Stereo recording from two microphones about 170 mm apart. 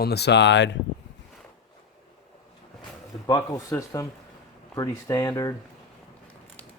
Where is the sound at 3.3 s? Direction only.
20° left (ahead or behind).